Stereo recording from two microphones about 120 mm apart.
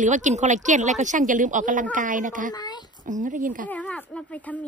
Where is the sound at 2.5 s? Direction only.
35° left (ahead or behind).